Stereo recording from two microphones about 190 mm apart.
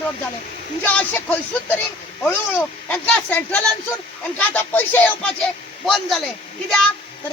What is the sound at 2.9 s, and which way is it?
A man's voice, 5° left (ahead or behind).